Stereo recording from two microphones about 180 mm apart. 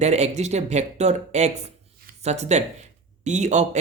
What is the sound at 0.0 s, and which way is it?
Speech, 40° right (ahead or behind).